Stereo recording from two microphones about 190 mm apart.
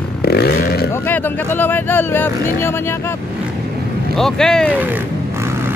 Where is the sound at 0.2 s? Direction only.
55° left (ahead or behind).